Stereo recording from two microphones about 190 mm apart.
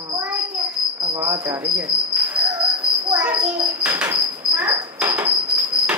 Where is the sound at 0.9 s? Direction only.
15° right (ahead or behind).